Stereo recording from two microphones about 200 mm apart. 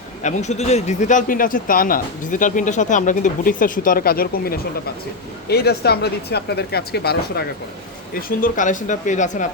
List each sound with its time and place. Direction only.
0.2 s a man's voice: 35° left (ahead or behind); by 7.4 s 50° left (ahead or behind)
8.4 s a man's voice: 40° left (ahead or behind)